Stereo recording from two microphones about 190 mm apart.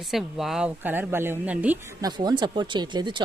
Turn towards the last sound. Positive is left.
turn(degrees=-25)  # may be behind; listen again after turning